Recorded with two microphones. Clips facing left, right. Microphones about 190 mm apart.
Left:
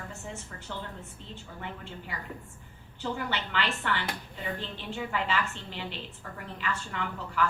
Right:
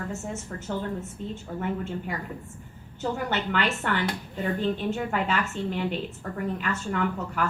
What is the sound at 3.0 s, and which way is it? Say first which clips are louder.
A woman's voice: right 5 dB; 45° right (ahead or behind).